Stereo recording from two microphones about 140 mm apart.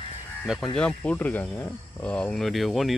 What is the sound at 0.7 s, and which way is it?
Speech, 10° left (ahead or behind).